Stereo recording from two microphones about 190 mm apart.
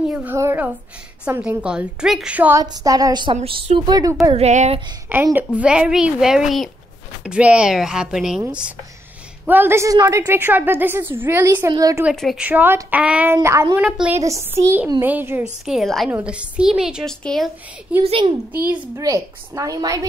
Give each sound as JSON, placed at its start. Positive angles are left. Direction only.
{"t": 0.1, "sound": "a woman's voice", "side_deg": -10}
{"t": 2.6, "sound": "speech", "side_deg": -20}
{"t": 4.3, "sound": "speech", "side_deg": -35}
{"t": 5.1, "sound": "a woman's voice", "side_deg": -10}
{"t": 12.1, "sound": "a woman's voice", "side_deg": 0}
{"t": 18.0, "sound": "speech", "side_deg": -30}
{"t": 18.9, "sound": "a woman's voice", "side_deg": -15}